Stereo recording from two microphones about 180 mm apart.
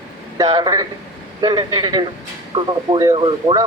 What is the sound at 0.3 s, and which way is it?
A man's voice, 20° right (ahead or behind).